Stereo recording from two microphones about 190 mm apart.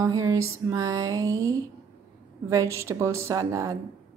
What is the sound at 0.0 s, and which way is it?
Music, 15° right (ahead or behind).